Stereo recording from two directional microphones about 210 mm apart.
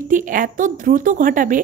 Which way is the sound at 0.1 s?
40° right (ahead or behind).